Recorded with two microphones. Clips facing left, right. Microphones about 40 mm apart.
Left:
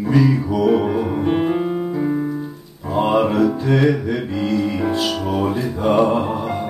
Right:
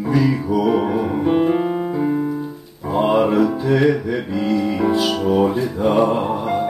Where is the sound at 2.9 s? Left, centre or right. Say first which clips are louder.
Right 1 dB; centre.